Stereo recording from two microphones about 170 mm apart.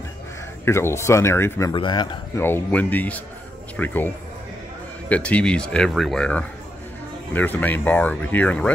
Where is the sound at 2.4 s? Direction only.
10° left (ahead or behind).